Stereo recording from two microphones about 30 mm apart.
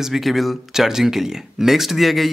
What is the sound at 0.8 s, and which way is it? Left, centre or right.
Speech, centre.